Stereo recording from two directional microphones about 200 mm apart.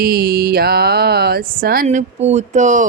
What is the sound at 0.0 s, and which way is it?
Mantra, 50° right (ahead or behind).